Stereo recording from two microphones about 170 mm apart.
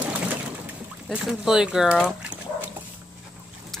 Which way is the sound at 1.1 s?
5° right (ahead or behind).